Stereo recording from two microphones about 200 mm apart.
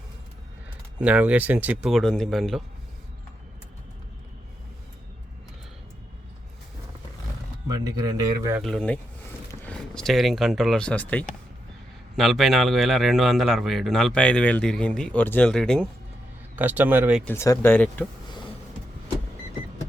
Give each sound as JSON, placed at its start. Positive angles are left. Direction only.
{"t": 0.9, "sound": "a man's voice", "side_deg": -5}
{"t": 7.7, "sound": "a man's voice", "side_deg": -20}
{"t": 8.6, "sound": "a man's voice", "side_deg": 5}
{"t": 16.6, "sound": "speech", "side_deg": -10}
{"t": 17.2, "sound": "speech", "side_deg": 15}